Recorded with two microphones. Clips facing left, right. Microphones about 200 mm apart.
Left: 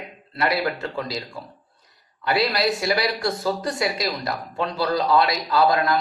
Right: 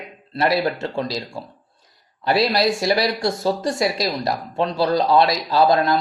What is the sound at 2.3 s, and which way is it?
Speech, 30° right (ahead or behind).